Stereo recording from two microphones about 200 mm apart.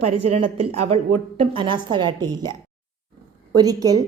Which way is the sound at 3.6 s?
20° right (ahead or behind).